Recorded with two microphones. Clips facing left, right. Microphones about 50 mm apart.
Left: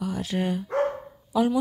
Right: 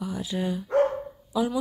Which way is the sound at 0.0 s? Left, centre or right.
Left.